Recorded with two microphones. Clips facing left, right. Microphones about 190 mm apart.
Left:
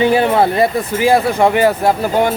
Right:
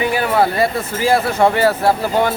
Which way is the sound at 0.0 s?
25° left (ahead or behind).